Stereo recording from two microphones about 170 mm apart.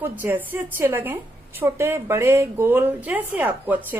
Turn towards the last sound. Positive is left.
turn(degrees=-10)  # may be behind; listen again after turning